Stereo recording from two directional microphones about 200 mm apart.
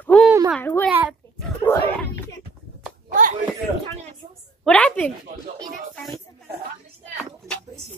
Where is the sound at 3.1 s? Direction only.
40° right (ahead or behind).